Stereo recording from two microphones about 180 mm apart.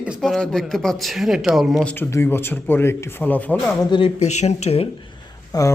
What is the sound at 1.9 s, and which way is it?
Speech, 15° left (ahead or behind).